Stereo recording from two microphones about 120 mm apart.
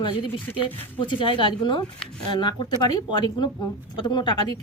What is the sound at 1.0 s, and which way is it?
Speech, 45° left (ahead or behind).